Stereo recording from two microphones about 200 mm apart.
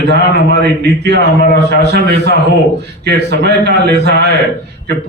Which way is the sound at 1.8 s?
60° right (ahead or behind).